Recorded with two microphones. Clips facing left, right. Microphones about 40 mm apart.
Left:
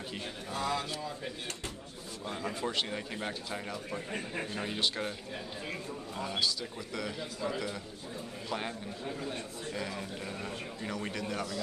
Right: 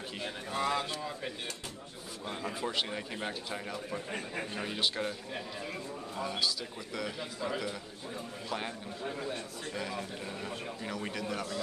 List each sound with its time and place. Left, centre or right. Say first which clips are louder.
0.2 s a man's voice: right 3 dB; centre
2.4 s a man's voice: even; centre
6.1 s a man's voice: even; centre
9.8 s a man's voice: right 1 dB; centre